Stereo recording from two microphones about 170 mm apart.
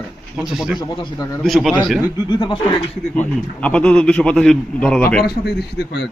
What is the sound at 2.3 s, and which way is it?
Speech, 25° left (ahead or behind).